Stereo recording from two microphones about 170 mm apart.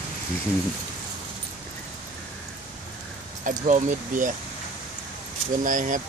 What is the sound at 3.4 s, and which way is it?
Speech, 45° right (ahead or behind).